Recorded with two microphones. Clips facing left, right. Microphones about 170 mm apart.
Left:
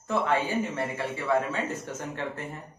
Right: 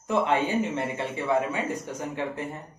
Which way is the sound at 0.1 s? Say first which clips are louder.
Right 2 dB; 20° right (ahead or behind).